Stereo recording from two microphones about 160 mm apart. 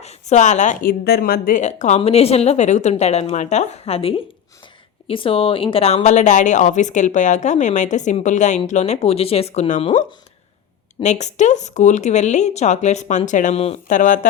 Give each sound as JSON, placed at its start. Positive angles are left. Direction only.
{"t": 0.0, "sound": "a woman's voice", "side_deg": 45}
{"t": 11.0, "sound": "a woman's voice", "side_deg": 45}